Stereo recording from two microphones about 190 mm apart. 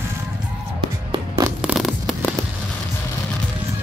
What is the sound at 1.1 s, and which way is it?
Music, 20° right (ahead or behind).